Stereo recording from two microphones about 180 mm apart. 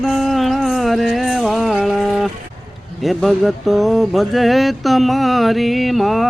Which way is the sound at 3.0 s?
Centre (ahead or behind).